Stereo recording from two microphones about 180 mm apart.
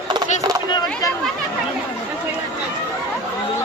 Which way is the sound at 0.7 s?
25° left (ahead or behind).